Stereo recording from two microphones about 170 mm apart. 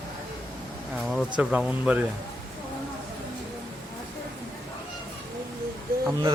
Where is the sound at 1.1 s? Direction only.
5° right (ahead or behind).